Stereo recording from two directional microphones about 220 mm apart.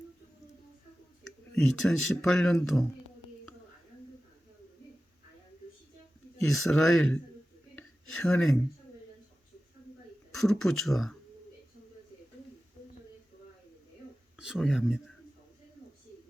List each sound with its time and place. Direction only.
1.5 s speech: centre (ahead or behind)
6.5 s speech: centre (ahead or behind)
7.8 s a sound: 5° left (ahead or behind)
10.3 s speech: centre (ahead or behind)
14.3 s speech: centre (ahead or behind)